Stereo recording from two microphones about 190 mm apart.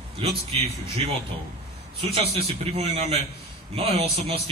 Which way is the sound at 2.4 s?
30° right (ahead or behind).